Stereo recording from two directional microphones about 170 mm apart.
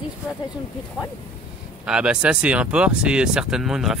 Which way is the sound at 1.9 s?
5° right (ahead or behind).